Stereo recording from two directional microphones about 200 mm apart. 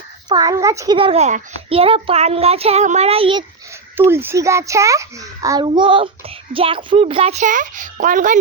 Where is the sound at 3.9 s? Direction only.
10° right (ahead or behind).